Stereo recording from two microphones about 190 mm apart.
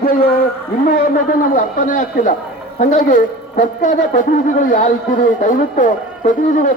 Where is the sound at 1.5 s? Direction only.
45° left (ahead or behind).